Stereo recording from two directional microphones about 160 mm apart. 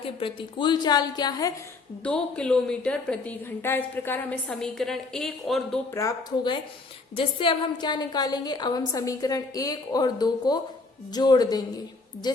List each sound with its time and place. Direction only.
0.2 s a woman's voice: 30° left (ahead or behind)
2.0 s a woman's voice: 5° left (ahead or behind)
5.9 s a woman's voice: 20° left (ahead or behind)